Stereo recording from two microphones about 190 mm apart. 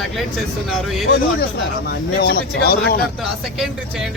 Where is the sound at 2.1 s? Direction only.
55° left (ahead or behind).